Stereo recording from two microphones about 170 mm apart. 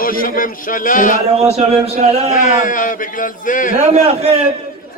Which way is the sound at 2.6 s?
50° left (ahead or behind).